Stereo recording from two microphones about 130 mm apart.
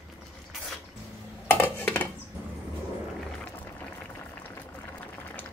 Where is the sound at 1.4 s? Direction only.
15° left (ahead or behind).